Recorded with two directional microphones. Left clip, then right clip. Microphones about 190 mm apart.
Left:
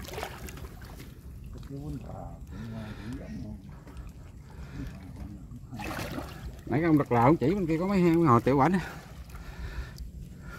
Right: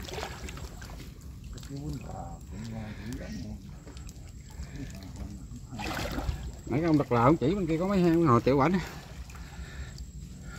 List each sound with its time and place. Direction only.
0.0 s boat: 30° left (ahead or behind)
2.5 s speech: 25° left (ahead or behind)
5.8 s speech: 20° left (ahead or behind)